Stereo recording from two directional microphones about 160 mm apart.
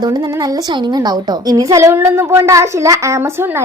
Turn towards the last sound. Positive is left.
turn(degrees=-15)  # may be behind; listen again after turning